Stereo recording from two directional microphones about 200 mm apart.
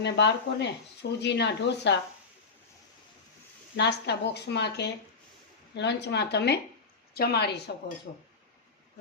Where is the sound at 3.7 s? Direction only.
60° left (ahead or behind).